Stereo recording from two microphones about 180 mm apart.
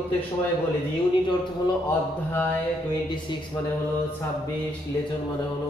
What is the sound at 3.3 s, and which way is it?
Speech, 25° left (ahead or behind).